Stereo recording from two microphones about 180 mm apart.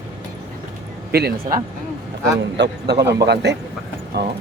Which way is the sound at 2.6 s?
75° right (ahead or behind).